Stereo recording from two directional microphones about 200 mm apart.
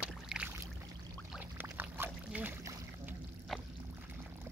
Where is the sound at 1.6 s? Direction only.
10° right (ahead or behind).